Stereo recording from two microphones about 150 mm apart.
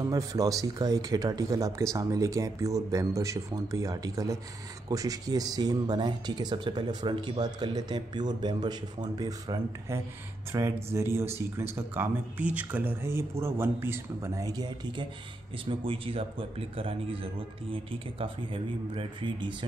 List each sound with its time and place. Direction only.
0.0 s speech: 25° right (ahead or behind)
15.6 s speech: 35° right (ahead or behind)